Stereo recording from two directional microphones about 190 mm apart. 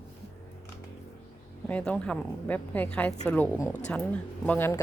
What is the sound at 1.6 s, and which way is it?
A woman's voice, 5° left (ahead or behind).